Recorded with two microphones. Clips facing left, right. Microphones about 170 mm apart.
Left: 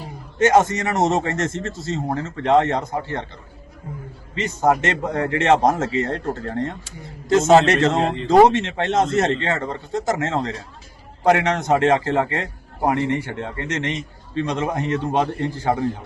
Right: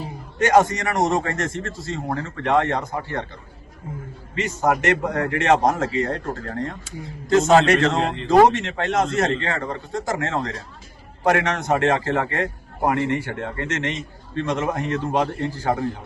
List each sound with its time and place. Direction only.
0.3 s a man's voice: 20° left (ahead or behind)
4.4 s a man's voice: 20° left (ahead or behind)
7.9 s speech: centre (ahead or behind)
8.3 s a man's voice: 20° left (ahead or behind)